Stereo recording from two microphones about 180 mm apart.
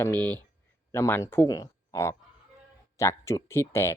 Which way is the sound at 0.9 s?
15° left (ahead or behind).